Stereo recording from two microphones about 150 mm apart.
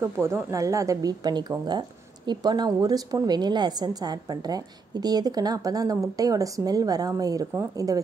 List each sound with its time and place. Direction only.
0.0 s speech: 15° right (ahead or behind)